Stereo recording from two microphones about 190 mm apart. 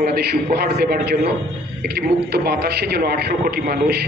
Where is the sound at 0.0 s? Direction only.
55° right (ahead or behind).